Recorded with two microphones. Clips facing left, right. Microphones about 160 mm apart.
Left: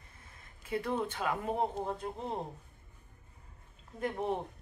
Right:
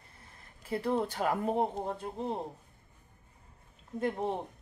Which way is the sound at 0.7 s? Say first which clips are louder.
Right 3 dB; 30° right (ahead or behind).